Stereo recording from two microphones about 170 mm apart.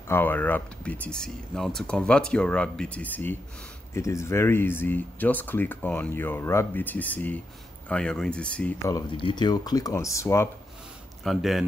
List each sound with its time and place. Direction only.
0.1 s speech: 10° left (ahead or behind)
9.1 s speech: 30° left (ahead or behind)
11.2 s speech: centre (ahead or behind)